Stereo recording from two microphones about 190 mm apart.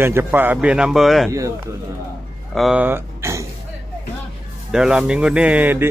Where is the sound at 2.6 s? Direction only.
5° right (ahead or behind).